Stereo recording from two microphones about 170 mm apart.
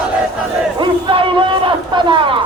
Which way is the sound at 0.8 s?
30° right (ahead or behind).